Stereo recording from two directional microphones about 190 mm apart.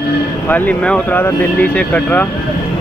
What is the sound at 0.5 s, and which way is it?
Speech, 10° left (ahead or behind).